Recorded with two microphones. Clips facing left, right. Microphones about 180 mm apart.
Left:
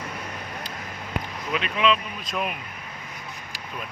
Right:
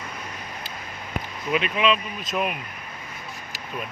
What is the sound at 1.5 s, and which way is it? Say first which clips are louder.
Speech: right 1 dB; 5° right (ahead or behind).